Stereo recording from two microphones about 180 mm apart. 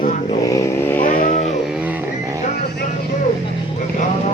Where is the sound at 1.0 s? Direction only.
45° left (ahead or behind).